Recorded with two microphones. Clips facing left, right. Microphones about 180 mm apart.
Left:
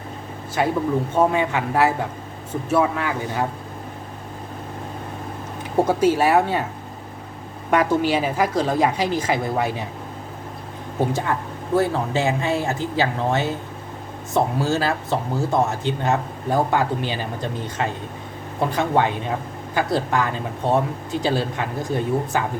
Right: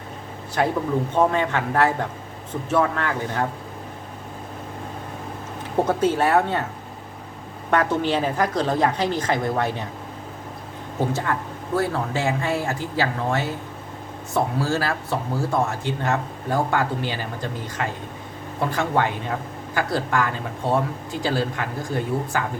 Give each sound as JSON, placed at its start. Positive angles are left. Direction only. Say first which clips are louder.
{"t": 0.6, "sound": "a woman's voice", "louder": "left 1 dB", "side_deg": 5}
{"t": 5.7, "sound": "a woman's voice", "louder": "left 3 dB", "side_deg": 10}
{"t": 7.7, "sound": "a woman's voice", "louder": "left 2 dB", "side_deg": 10}
{"t": 11.1, "sound": "speech", "louder": "left 1 dB", "side_deg": 15}